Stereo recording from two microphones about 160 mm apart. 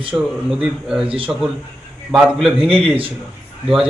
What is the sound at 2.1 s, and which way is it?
Speech, 5° right (ahead or behind).